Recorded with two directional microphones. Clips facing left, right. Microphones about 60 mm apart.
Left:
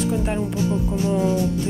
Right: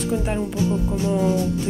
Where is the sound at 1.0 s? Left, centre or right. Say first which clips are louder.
Even; left.